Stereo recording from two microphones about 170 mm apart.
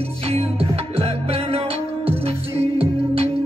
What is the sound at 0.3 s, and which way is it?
Music, 35° right (ahead or behind).